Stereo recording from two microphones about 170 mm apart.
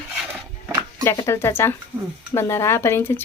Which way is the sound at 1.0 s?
15° left (ahead or behind).